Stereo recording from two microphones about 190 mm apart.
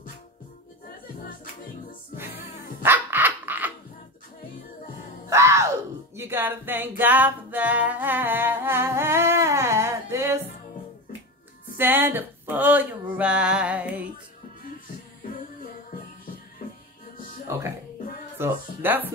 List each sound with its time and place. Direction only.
2.1 s music: 10° right (ahead or behind)
2.8 s dog: 10° right (ahead or behind)
5.3 s music: 15° right (ahead or behind)
11.7 s a sound: 10° right (ahead or behind)
17.5 s speech: 15° right (ahead or behind)